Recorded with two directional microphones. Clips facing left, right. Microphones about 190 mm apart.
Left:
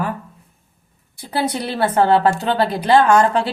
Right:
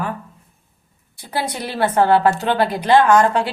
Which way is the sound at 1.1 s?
30° left (ahead or behind).